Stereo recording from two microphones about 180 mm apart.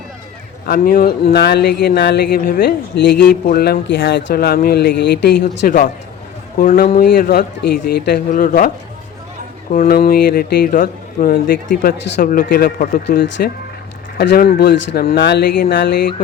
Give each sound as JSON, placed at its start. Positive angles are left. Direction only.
{"t": 0.7, "sound": "speech", "side_deg": 50}
{"t": 3.4, "sound": "speech", "side_deg": 60}
{"t": 8.3, "sound": "speech", "side_deg": 45}
{"t": 9.7, "sound": "speech", "side_deg": 55}
{"t": 12.2, "sound": "speech", "side_deg": 50}
{"t": 14.2, "sound": "speech", "side_deg": 60}